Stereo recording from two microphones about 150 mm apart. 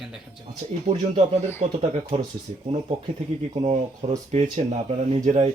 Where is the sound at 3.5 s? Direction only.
50° right (ahead or behind).